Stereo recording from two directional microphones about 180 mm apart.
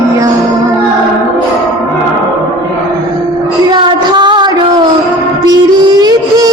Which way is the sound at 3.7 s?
25° right (ahead or behind).